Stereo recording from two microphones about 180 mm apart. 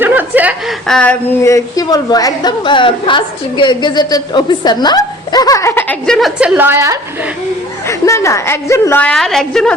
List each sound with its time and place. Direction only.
0.0 s chuckle: 10° right (ahead or behind)
0.9 s a sound: 5° left (ahead or behind)
1.5 s a woman's voice: 20° left (ahead or behind); by 7.0 s 15° right (ahead or behind)
7.9 s a woman's voice: 15° left (ahead or behind)